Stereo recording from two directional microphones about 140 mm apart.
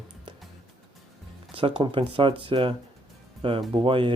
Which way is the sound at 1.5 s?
40° right (ahead or behind).